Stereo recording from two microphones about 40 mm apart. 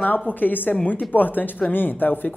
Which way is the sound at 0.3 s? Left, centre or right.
Left.